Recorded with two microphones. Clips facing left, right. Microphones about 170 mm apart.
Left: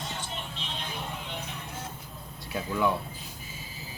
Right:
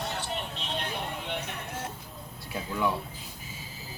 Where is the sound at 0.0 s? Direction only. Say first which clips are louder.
Right 3 dB; 65° right (ahead or behind).